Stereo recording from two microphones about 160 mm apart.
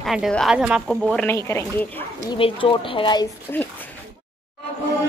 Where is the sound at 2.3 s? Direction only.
30° left (ahead or behind).